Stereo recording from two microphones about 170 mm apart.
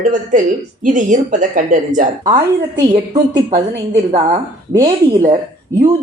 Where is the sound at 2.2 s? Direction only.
20° right (ahead or behind).